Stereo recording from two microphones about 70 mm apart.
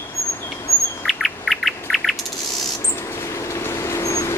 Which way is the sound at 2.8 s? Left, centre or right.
Left.